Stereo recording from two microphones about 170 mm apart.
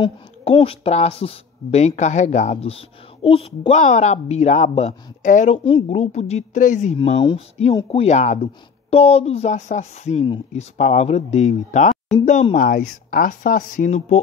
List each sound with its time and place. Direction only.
0.0 s speech: 35° left (ahead or behind)
5.6 s speech: 35° left (ahead or behind)
7.0 s speech: 30° left (ahead or behind)